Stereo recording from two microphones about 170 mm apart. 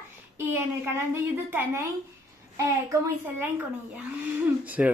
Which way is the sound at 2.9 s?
10° right (ahead or behind).